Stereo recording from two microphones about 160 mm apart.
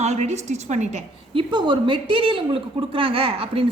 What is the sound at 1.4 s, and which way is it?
A woman's voice, 30° right (ahead or behind).